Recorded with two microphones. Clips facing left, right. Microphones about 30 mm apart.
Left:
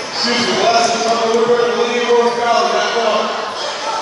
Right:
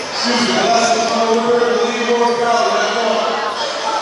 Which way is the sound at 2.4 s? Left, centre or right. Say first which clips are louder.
Even; centre.